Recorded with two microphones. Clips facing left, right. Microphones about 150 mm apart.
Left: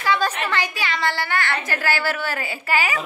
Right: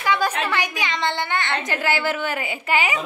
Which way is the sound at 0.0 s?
10° right (ahead or behind).